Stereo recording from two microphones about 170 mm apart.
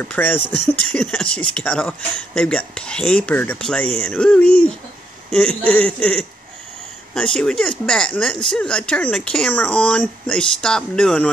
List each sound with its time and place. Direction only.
0.0 s speech: 10° left (ahead or behind)